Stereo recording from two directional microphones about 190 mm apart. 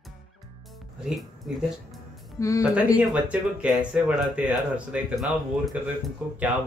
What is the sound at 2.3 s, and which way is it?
Speech, 15° left (ahead or behind).